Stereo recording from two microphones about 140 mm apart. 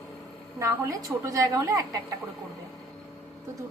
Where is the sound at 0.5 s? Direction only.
25° right (ahead or behind).